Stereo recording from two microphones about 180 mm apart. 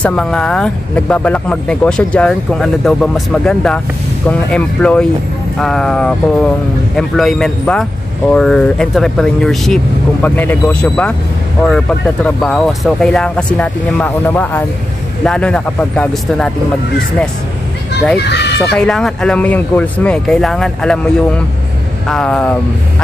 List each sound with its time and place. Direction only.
0.0 s speech: 5° left (ahead or behind)
18.2 s speech: 70° left (ahead or behind)
18.8 s speech: 5° left (ahead or behind)